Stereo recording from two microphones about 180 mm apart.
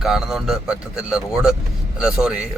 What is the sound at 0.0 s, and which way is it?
Speech, centre (ahead or behind).